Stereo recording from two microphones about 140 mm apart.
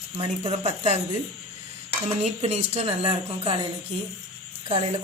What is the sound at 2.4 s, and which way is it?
A woman's voice, 50° right (ahead or behind).